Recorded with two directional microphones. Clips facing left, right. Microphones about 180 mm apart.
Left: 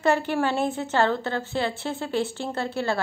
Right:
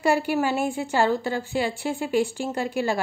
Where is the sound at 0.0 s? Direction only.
10° right (ahead or behind).